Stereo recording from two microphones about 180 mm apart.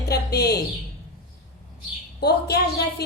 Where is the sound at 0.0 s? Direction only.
65° left (ahead or behind).